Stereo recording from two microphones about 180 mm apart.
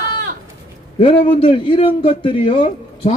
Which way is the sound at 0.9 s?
30° left (ahead or behind).